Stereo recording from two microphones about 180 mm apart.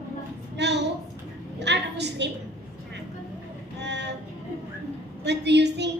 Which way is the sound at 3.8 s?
70° right (ahead or behind).